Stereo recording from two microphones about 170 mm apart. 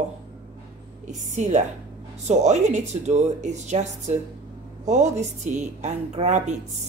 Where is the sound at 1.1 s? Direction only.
45° right (ahead or behind).